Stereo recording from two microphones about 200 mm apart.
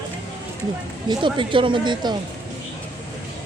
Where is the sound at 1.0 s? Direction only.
25° right (ahead or behind).